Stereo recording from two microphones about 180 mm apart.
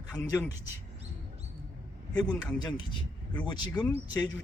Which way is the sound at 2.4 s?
25° left (ahead or behind).